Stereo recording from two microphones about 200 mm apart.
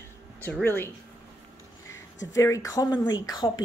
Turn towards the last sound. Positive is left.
turn(degrees=20)  # may be behind; listen again after turning